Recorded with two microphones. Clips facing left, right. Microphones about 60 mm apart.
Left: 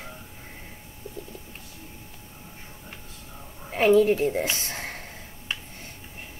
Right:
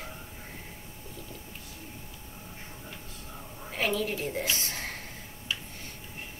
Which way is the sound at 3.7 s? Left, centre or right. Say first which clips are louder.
Left 12 dB; left.